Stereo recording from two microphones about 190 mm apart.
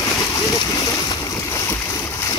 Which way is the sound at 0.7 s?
20° left (ahead or behind).